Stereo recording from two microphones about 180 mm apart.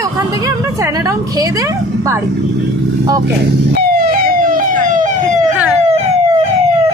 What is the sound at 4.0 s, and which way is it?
Emergency vehicle, 55° right (ahead or behind).